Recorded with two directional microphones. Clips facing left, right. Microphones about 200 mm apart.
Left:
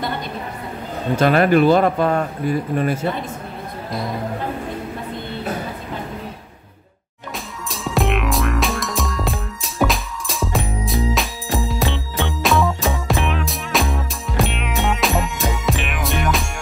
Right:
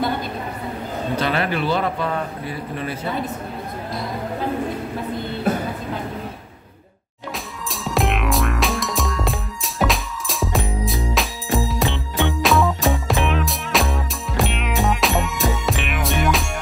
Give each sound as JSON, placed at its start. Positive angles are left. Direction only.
{"t": 1.1, "sound": "speech", "side_deg": 50}
{"t": 7.7, "sound": "music", "side_deg": 0}